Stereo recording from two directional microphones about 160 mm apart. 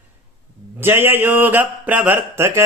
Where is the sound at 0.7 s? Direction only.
15° right (ahead or behind).